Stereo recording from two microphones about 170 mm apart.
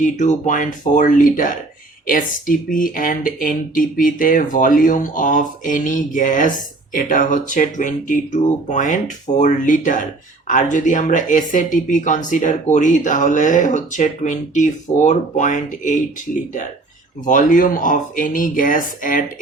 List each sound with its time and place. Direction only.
0.0 s speech: 45° left (ahead or behind)
17.2 s speech: 50° left (ahead or behind)